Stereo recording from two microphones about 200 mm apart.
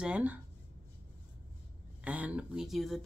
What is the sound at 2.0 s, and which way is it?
Speech, 5° right (ahead or behind).